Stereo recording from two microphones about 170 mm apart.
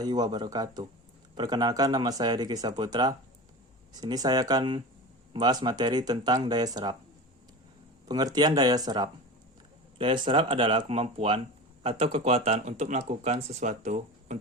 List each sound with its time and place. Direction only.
0.0 s speech: 25° right (ahead or behind)
8.0 s speech: 20° right (ahead or behind); by 14.3 s 45° right (ahead or behind)